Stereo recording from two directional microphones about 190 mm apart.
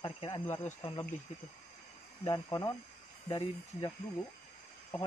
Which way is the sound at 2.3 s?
20° left (ahead or behind).